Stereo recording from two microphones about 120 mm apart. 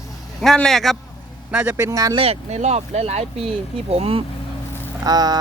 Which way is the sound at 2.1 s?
55° right (ahead or behind).